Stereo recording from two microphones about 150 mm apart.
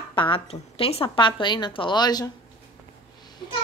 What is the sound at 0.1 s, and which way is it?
A woman's voice, 35° left (ahead or behind).